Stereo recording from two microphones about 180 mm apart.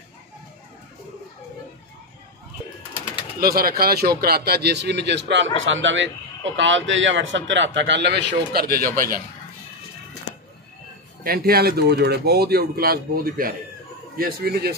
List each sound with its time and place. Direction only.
3.3 s speech: 55° right (ahead or behind); by 5.5 s 75° right (ahead or behind)
5.6 s a man's voice: 90° right; by 9.2 s 50° right (ahead or behind)
11.2 s speech: 55° right (ahead or behind)